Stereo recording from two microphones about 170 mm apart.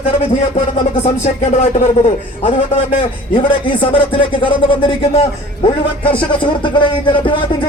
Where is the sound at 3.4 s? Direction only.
30° left (ahead or behind).